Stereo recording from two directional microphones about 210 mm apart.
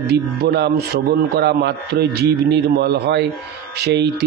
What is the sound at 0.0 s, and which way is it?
A man's voice, 50° right (ahead or behind).